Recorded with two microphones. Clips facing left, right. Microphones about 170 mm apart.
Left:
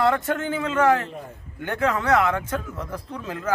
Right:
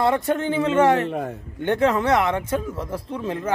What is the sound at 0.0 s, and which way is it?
Speech, 25° right (ahead or behind).